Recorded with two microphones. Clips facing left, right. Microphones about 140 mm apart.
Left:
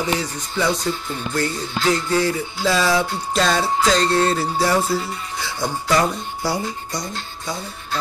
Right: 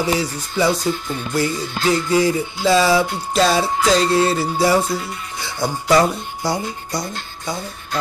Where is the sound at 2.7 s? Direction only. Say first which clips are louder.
Right 4 dB; centre (ahead or behind).